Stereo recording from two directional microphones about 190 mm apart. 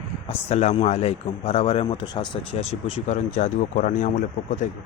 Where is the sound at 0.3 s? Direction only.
35° left (ahead or behind).